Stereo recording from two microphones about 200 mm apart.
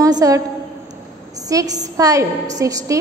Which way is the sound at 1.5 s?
20° right (ahead or behind).